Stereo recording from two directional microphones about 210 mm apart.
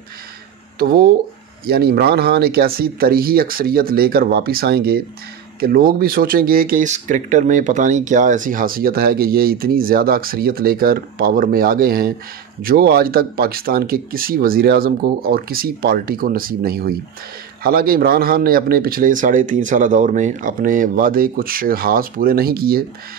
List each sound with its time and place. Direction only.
0.7 s speech: 45° right (ahead or behind)